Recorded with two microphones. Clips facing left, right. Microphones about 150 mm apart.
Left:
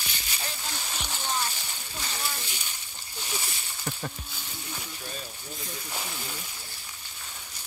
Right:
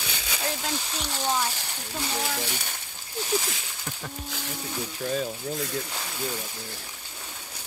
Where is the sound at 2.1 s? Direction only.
85° right.